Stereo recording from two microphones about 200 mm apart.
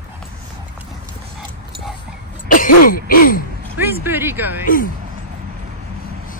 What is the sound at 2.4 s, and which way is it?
Throat clearing, 45° left (ahead or behind).